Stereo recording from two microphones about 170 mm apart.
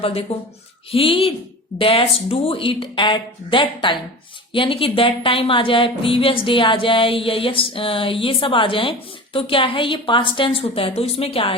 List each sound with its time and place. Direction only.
0.0 s a woman's voice: 35° left (ahead or behind)